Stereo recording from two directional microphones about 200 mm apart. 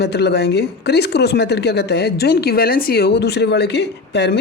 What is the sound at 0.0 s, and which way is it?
Speech, 55° left (ahead or behind).